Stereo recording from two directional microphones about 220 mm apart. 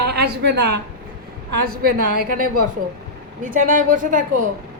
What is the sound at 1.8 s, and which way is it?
A woman's voice, 45° right (ahead or behind).